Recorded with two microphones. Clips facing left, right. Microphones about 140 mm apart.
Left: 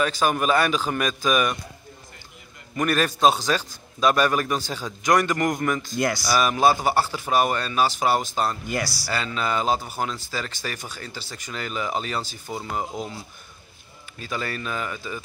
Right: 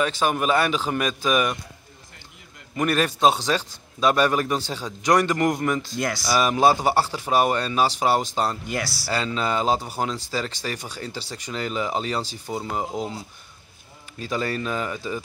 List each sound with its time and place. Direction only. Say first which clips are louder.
0.0 s speech: even; 25° right (ahead or behind)
2.7 s speech: even; 25° right (ahead or behind)
5.9 s speech: left 2 dB; centre (ahead or behind)
6.2 s speech: right 2 dB; 25° right (ahead or behind)
8.6 s speech: left 1 dB; centre (ahead or behind)
9.0 s speech: right 2 dB; 30° right (ahead or behind)
12.4 s speech: right 2 dB; 15° right (ahead or behind)
14.1 s speech: right 4 dB; 30° right (ahead or behind)